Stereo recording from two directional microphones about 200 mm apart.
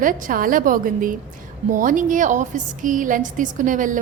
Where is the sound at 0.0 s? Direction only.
40° right (ahead or behind).